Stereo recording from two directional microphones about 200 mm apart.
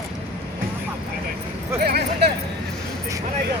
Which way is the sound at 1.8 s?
50° right (ahead or behind).